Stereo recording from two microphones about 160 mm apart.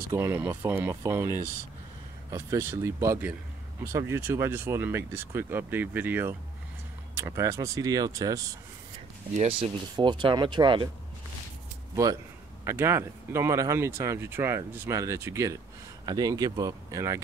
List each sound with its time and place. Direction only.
0.1 s speech: 15° right (ahead or behind)
2.3 s speech: 15° right (ahead or behind)
9.4 s speech: 35° right (ahead or behind)
11.9 s a man's voice: 20° right (ahead or behind)